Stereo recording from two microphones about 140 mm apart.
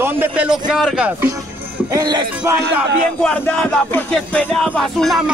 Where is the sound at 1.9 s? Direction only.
30° right (ahead or behind).